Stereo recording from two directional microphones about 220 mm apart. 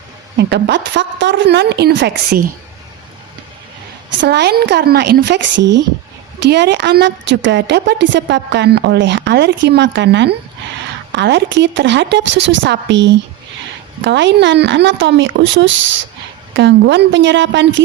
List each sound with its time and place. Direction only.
0.3 s a woman's voice: 50° right (ahead or behind)
4.2 s a woman's voice: 50° right (ahead or behind)
6.4 s a woman's voice: 50° right (ahead or behind)